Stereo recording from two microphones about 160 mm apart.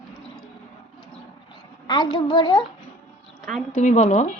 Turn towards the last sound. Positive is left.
turn(degrees=50)  # may be behind; listen again after turning